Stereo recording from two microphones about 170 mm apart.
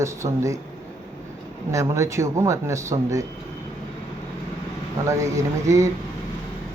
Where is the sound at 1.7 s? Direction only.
15° right (ahead or behind).